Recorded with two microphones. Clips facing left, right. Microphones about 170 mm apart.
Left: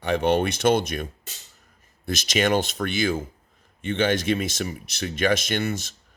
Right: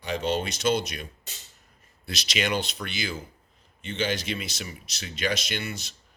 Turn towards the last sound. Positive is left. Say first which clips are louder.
# left 7 dB
turn(degrees=50)  # may be behind; listen again after turning